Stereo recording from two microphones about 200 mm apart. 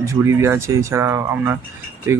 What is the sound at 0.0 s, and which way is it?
Speech, 15° right (ahead or behind).